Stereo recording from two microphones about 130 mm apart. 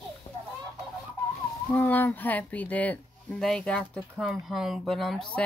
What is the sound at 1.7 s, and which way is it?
Speech, 15° left (ahead or behind).